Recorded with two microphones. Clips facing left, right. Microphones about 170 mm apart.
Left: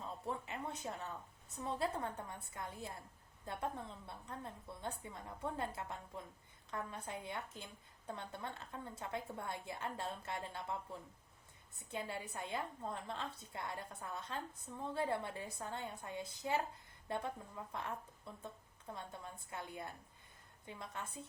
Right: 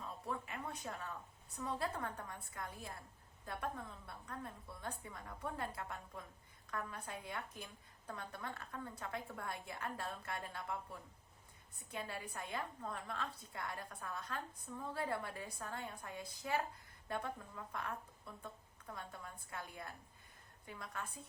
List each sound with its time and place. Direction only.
0.3 s a woman's voice: 25° left (ahead or behind)